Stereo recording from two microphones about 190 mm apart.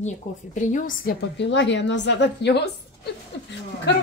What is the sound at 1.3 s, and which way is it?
A woman's voice, 70° left (ahead or behind).